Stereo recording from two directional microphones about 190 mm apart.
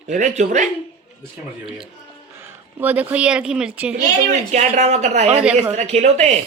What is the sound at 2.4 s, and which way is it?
Speech, 10° right (ahead or behind).